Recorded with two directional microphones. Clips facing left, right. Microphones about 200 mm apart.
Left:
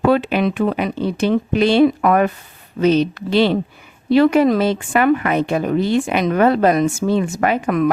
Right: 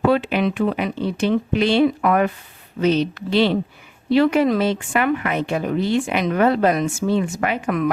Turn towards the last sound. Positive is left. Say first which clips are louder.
# left 4 dB
turn(degrees=40)  # may be behind; listen again after turning